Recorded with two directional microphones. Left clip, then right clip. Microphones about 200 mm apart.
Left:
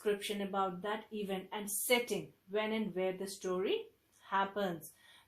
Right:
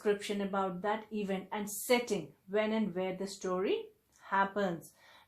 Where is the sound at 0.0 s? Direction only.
25° right (ahead or behind).